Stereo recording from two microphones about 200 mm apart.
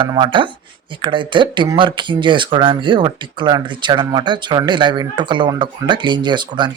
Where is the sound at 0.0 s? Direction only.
25° right (ahead or behind).